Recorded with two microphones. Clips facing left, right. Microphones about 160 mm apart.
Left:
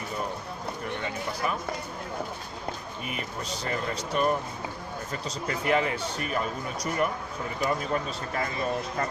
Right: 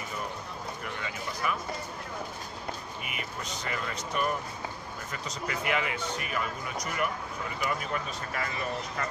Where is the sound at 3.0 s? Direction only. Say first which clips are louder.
Left 6 dB; 35° left (ahead or behind).